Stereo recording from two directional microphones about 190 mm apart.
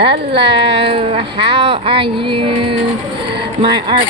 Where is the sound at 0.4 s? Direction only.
30° right (ahead or behind).